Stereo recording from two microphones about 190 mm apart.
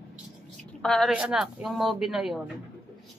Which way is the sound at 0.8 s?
5° left (ahead or behind).